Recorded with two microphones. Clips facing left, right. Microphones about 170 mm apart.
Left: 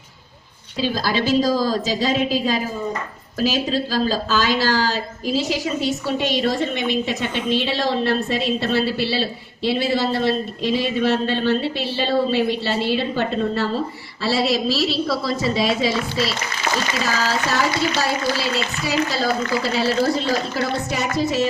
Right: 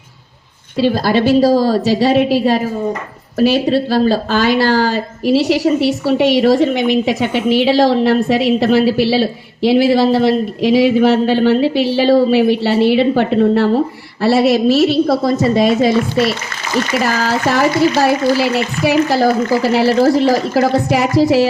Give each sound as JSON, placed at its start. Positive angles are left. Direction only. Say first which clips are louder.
{"t": 0.8, "sound": "a woman's voice", "louder": "right 8 dB", "side_deg": -60}